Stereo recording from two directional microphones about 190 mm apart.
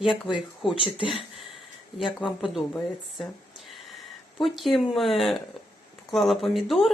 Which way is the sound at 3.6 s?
Centre (ahead or behind).